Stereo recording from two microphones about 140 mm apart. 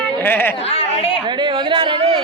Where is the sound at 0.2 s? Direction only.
15° left (ahead or behind).